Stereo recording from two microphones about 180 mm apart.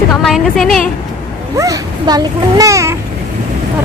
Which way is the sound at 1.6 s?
20° right (ahead or behind).